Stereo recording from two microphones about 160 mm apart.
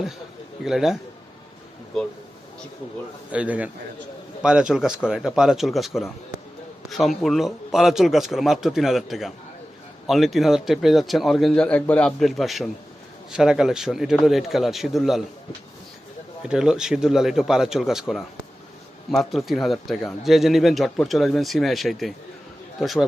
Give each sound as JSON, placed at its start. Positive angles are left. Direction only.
{"t": 0.6, "sound": "speech", "side_deg": 0}
{"t": 1.9, "sound": "speech", "side_deg": 5}
{"t": 3.3, "sound": "a man's voice", "side_deg": -10}
{"t": 16.4, "sound": "speech", "side_deg": -5}